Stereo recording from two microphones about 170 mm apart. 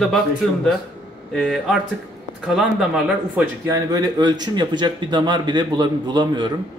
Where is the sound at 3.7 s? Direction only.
20° right (ahead or behind).